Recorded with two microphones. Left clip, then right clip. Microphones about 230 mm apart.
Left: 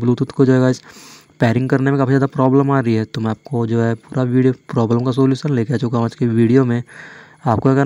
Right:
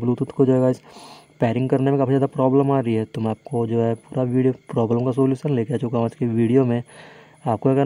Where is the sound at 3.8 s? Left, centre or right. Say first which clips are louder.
Left 2 dB; centre.